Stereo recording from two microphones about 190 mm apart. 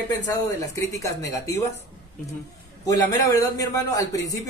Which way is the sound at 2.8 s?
20° left (ahead or behind).